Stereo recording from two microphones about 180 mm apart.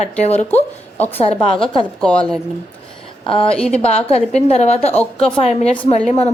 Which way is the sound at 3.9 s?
35° left (ahead or behind).